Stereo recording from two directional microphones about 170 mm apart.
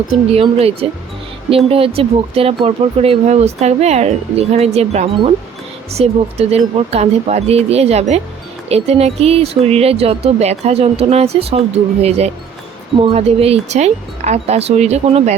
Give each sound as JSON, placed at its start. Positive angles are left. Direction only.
{"t": 0.1, "sound": "speech", "side_deg": -35}